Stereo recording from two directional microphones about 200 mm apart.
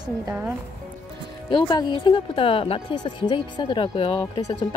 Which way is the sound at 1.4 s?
20° left (ahead or behind).